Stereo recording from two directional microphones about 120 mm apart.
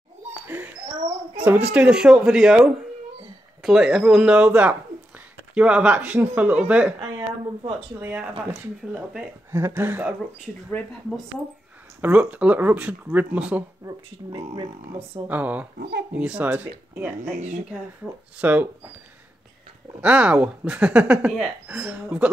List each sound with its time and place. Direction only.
1.4 s speech: 10° right (ahead or behind)
8.0 s speech: 15° right (ahead or behind)
9.5 s speech: 20° right (ahead or behind)
12.0 s speech: 10° right (ahead or behind)
14.5 s speech: 40° right (ahead or behind)
15.2 s speech: 15° right (ahead or behind)
18.4 s speech: 15° right (ahead or behind)
20.0 s speech: 10° right (ahead or behind)